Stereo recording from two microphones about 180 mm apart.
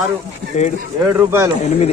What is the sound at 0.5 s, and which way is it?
Speech, 40° left (ahead or behind).